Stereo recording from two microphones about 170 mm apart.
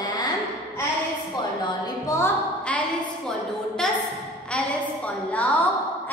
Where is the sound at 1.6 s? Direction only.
20° left (ahead or behind).